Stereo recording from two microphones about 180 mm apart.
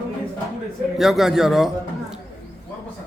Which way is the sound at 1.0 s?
Centre (ahead or behind).